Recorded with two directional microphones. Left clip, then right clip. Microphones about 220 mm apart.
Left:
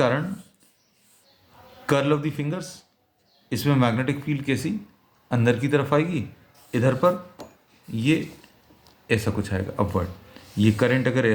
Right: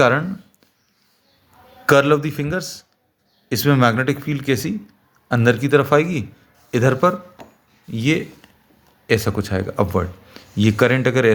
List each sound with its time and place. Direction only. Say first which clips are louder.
1.9 s speech: right 8 dB; 45° right (ahead or behind)